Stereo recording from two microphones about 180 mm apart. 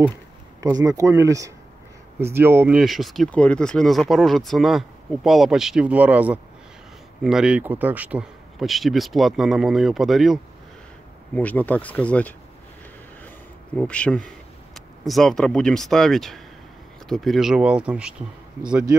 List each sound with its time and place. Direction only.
0.6 s speech: 20° right (ahead or behind); by 12.4 s 10° left (ahead or behind)
13.7 s speech: 5° left (ahead or behind)